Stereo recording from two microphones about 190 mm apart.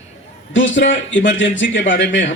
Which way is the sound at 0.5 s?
75° left (ahead or behind).